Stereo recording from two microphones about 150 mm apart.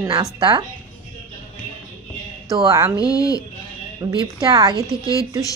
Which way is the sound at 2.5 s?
25° right (ahead or behind).